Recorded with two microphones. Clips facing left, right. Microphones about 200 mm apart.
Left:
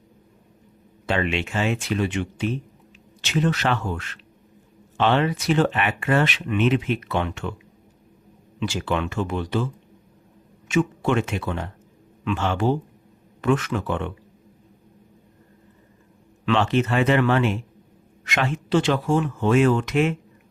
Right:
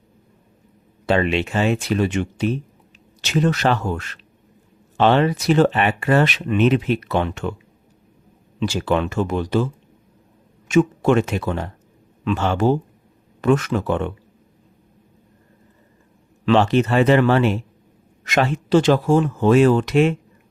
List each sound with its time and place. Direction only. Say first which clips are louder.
1.0 s speech: right 5 dB; 35° right (ahead or behind)
8.5 s speech: right 5 dB; 40° right (ahead or behind)
10.7 s speech: right 6 dB; 40° right (ahead or behind)
16.5 s speech: right 5 dB; 35° right (ahead or behind)